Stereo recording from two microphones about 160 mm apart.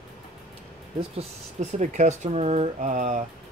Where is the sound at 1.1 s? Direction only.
50° right (ahead or behind).